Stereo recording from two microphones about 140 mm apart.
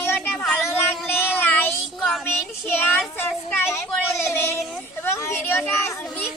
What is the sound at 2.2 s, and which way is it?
Child singing, 15° left (ahead or behind).